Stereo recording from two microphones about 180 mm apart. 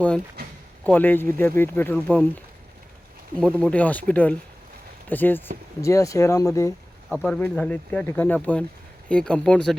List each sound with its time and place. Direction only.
0.9 s speech: 10° left (ahead or behind)
3.6 s speech: 5° left (ahead or behind)
7.1 s speech: 5° left (ahead or behind)